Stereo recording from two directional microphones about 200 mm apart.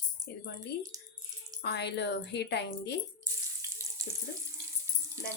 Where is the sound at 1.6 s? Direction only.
55° left (ahead or behind).